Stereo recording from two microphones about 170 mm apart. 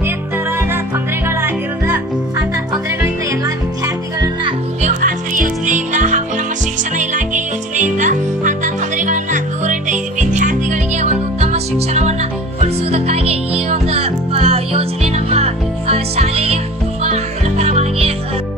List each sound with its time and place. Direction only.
1.2 s music: 15° right (ahead or behind)
3.3 s music: 20° right (ahead or behind)
4.8 s music: 50° right (ahead or behind)